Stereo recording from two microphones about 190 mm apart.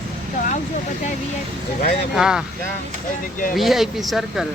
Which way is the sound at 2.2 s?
5° right (ahead or behind).